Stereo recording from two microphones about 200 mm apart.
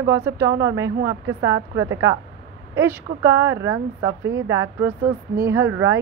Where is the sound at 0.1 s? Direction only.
15° right (ahead or behind).